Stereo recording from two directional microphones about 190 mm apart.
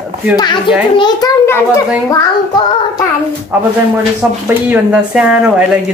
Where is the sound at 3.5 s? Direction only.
10° right (ahead or behind).